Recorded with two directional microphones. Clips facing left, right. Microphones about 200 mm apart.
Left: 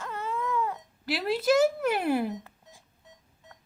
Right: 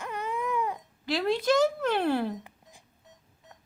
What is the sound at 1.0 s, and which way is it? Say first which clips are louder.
A woman's voice: even; 5° left (ahead or behind).